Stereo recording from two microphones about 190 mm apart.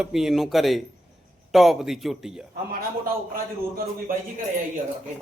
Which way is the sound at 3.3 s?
50° right (ahead or behind).